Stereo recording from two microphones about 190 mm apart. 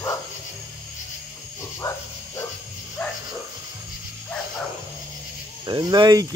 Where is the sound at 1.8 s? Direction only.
15° left (ahead or behind).